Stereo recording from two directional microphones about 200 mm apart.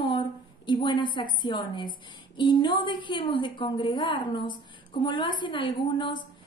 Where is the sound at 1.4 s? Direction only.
25° left (ahead or behind).